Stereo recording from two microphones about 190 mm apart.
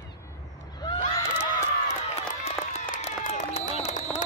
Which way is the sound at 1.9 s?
35° left (ahead or behind).